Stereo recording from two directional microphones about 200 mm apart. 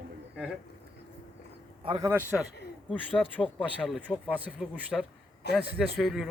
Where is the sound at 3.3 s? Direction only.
5° left (ahead or behind).